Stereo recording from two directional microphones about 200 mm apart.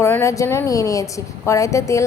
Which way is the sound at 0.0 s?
15° left (ahead or behind).